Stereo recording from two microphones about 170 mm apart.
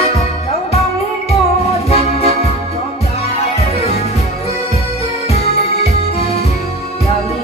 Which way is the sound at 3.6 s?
35° left (ahead or behind).